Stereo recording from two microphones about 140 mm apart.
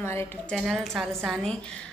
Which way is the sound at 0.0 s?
20° left (ahead or behind).